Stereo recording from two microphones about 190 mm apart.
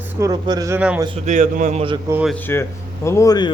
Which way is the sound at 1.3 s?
40° right (ahead or behind).